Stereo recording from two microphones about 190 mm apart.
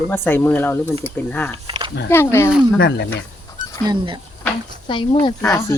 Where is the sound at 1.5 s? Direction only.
30° right (ahead or behind).